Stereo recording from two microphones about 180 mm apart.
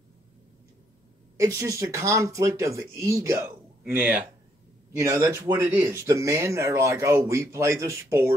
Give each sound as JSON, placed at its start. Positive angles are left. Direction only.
{"t": 1.4, "sound": "speech", "side_deg": -20}